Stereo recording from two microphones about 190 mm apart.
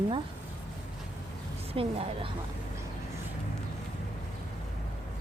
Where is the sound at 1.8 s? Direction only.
30° right (ahead or behind).